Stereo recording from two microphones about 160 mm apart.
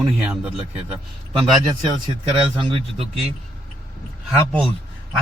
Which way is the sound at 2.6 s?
35° right (ahead or behind).